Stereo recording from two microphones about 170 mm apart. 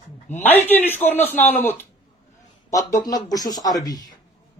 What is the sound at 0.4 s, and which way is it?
Speech, 10° left (ahead or behind).